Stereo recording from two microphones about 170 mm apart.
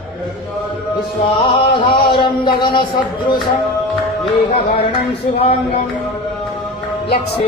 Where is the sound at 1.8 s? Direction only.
30° left (ahead or behind).